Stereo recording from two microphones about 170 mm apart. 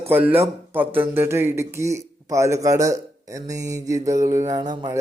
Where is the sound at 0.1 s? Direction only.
10° right (ahead or behind).